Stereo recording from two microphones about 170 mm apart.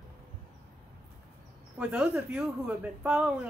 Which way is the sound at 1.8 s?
5° right (ahead or behind).